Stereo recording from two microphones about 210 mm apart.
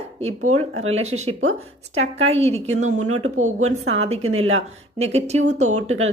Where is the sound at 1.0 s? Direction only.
30° right (ahead or behind).